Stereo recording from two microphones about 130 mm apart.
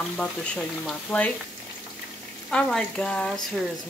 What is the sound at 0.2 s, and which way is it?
Speech, 10° left (ahead or behind).